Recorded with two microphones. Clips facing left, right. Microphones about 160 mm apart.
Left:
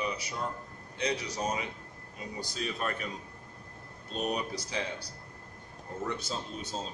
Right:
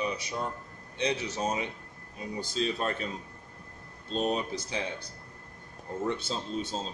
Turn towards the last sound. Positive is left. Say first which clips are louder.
# right 4 dB
turn(degrees=-25)  # may be behind; listen again after turning